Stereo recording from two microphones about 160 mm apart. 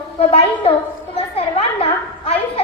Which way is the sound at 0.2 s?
40° left (ahead or behind).